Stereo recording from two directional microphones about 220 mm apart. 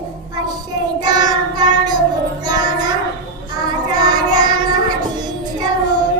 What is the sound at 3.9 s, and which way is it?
Child singing, 20° right (ahead or behind).